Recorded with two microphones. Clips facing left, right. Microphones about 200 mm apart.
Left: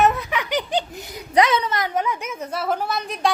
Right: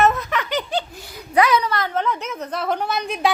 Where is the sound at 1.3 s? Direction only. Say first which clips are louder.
Right 1 dB; 25° left (ahead or behind).